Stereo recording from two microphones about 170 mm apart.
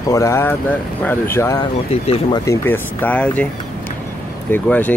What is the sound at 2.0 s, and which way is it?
Speech, 35° left (ahead or behind).